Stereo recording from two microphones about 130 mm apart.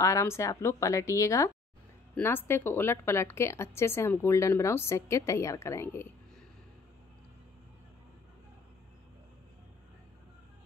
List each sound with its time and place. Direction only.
0.0 s a woman's voice: 20° left (ahead or behind)